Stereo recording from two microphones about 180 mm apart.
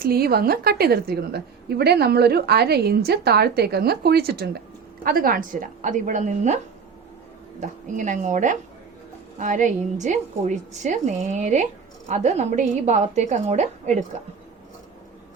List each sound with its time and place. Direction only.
0.0 s a woman's voice: 55° right (ahead or behind); by 6.6 s 40° right (ahead or behind)
7.6 s a woman's voice: 45° right (ahead or behind)